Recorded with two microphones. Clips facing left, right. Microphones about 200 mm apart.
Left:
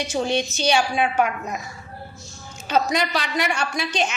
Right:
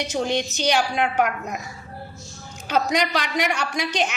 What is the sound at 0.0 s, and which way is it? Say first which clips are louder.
Speech: left 1 dB; 15° right (ahead or behind).